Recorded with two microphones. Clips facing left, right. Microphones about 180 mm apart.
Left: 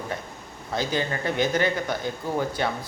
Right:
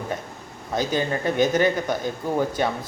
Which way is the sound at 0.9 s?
20° right (ahead or behind).